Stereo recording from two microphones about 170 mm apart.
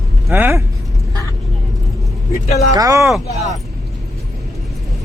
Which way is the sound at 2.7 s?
20° right (ahead or behind).